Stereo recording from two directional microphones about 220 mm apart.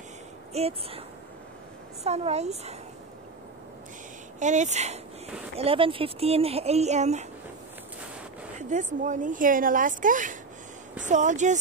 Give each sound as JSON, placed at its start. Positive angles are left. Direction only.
{"t": 0.5, "sound": "speech", "side_deg": -30}
{"t": 2.0, "sound": "speech", "side_deg": -30}
{"t": 4.4, "sound": "speech", "side_deg": -35}
{"t": 8.5, "sound": "speech", "side_deg": -35}